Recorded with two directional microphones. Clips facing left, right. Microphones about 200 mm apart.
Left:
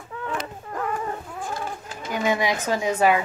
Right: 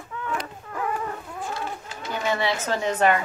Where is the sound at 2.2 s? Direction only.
15° left (ahead or behind).